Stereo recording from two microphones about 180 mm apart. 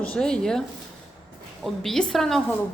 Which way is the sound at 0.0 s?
5° left (ahead or behind).